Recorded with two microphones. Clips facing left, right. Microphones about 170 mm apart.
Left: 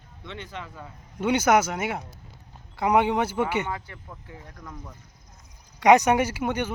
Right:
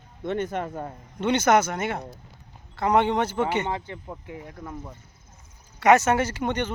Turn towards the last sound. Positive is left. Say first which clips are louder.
# even
turn(degrees=10)  # may be behind; listen again after turning